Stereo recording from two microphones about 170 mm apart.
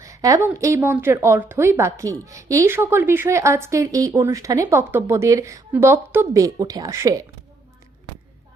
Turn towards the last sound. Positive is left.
turn(degrees=-20)  # may be behind; listen again after turning